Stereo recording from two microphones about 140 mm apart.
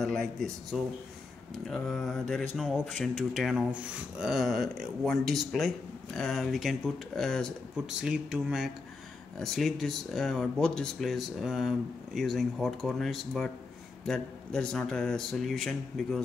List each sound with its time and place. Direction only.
0.0 s speech: 5° left (ahead or behind)